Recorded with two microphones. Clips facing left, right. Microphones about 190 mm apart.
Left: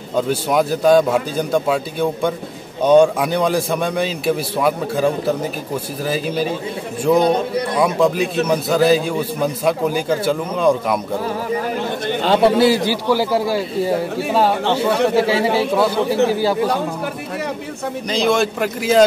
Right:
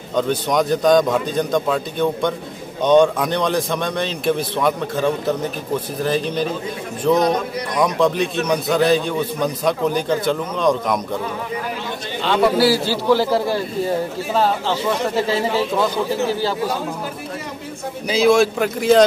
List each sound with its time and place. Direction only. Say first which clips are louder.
0.1 s a man's voice: left 1 dB; 5° left (ahead or behind)
7.2 s a man's voice: left 3 dB; 30° left (ahead or behind)
7.8 s a man's voice: even; 5° left (ahead or behind)
12.1 s bird: left 5 dB; 45° left (ahead or behind)
12.4 s a man's voice: left 2 dB; 20° left (ahead or behind)
18.0 s speech: right 3 dB; 5° right (ahead or behind)